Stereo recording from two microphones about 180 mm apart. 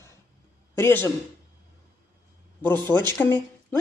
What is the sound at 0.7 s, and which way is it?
Speech, 15° left (ahead or behind).